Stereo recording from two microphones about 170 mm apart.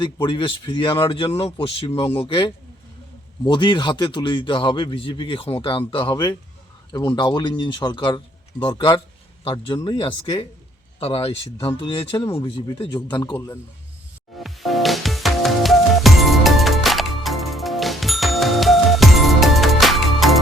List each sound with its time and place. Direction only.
0.0 s a man's voice: 25° left (ahead or behind)
13.3 s speech: 15° left (ahead or behind)
14.3 s music: centre (ahead or behind)